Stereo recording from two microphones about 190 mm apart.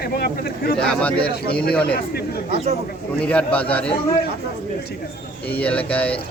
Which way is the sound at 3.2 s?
5° left (ahead or behind).